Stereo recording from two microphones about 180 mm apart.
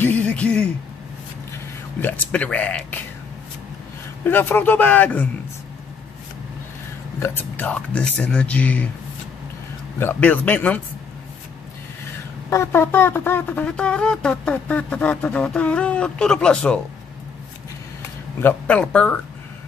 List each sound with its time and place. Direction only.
0.0 s speech: 10° left (ahead or behind)
2.0 s speech: 10° left (ahead or behind)
4.2 s speech: 10° left (ahead or behind)
7.2 s speech: 10° left (ahead or behind)
9.9 s speech: 10° left (ahead or behind)
12.4 s speech: 15° left (ahead or behind)
18.4 s speech: 10° left (ahead or behind)